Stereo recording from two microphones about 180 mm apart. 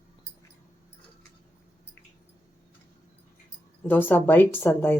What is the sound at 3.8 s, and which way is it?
A woman's voice, 10° left (ahead or behind).